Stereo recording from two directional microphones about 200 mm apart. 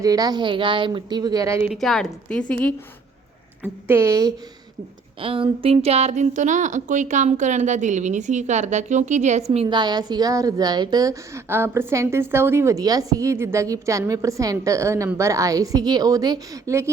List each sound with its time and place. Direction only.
0.0 s speech: 20° right (ahead or behind)
1.7 s speech: centre (ahead or behind)
3.6 s a woman's voice: 10° right (ahead or behind)
5.2 s speech: 25° right (ahead or behind)